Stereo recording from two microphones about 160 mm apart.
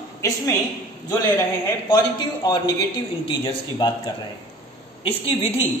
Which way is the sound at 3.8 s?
25° left (ahead or behind).